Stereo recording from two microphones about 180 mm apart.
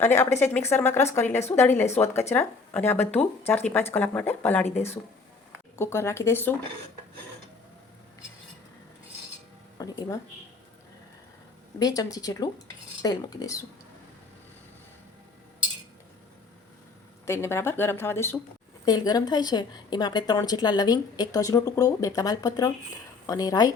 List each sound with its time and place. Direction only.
0.0 s speech: 10° left (ahead or behind)
9.7 s a sound: 20° left (ahead or behind)
11.8 s a woman's voice: 20° left (ahead or behind)
17.2 s a woman's voice: 15° left (ahead or behind)